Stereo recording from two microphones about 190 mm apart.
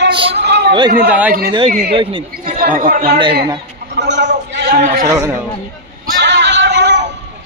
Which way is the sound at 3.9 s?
65° right (ahead or behind).